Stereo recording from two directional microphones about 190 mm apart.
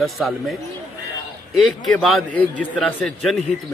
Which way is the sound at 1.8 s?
Centre (ahead or behind).